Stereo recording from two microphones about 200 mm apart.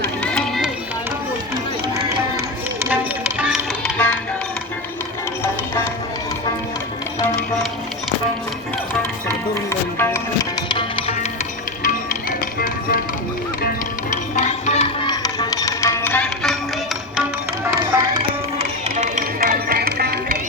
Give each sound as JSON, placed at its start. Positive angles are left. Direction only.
{"t": 0.0, "sound": "run", "side_deg": 5}
{"t": 2.9, "sound": "music", "side_deg": -5}
{"t": 3.9, "sound": "music", "side_deg": 5}
{"t": 5.4, "sound": "music", "side_deg": 10}
{"t": 9.6, "sound": "music", "side_deg": 10}
{"t": 10.7, "sound": "music", "side_deg": 25}
{"t": 12.5, "sound": "music", "side_deg": 45}
{"t": 14.3, "sound": "music", "side_deg": 35}
{"t": 15.0, "sound": "music", "side_deg": 20}
{"t": 17.7, "sound": "music", "side_deg": -15}
{"t": 18.9, "sound": "music", "side_deg": -40}